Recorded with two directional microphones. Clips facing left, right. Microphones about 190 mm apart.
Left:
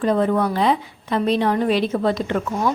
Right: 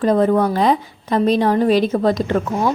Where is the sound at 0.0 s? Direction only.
40° right (ahead or behind).